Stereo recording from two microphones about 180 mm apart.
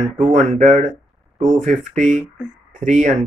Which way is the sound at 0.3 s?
40° right (ahead or behind).